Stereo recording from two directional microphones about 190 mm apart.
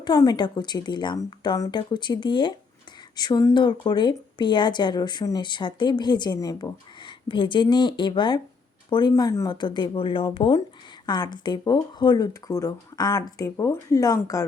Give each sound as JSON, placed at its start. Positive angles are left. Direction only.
{"t": 0.0, "sound": "speech", "side_deg": 20}